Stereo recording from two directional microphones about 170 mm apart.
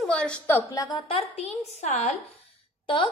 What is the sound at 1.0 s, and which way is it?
A woman's voice, 35° left (ahead or behind).